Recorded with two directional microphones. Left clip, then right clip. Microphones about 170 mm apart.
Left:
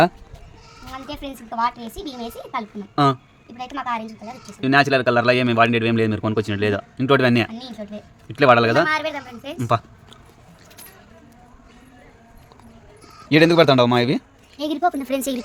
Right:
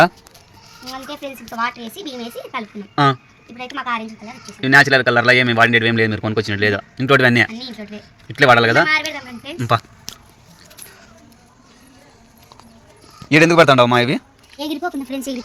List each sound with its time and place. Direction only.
1.1 s a woman's voice: 30° left (ahead or behind)
1.6 s a woman's voice: 15° left (ahead or behind)
3.8 s a woman's voice: 25° left (ahead or behind)
4.6 s a man's voice: 10° right (ahead or behind)
8.9 s a woman's voice: 25° left (ahead or behind)
9.6 s a man's voice: 10° right (ahead or behind)
13.2 s a man's voice: 10° right (ahead or behind)
13.7 s a man's voice: 5° left (ahead or behind)
14.9 s a woman's voice: 40° left (ahead or behind)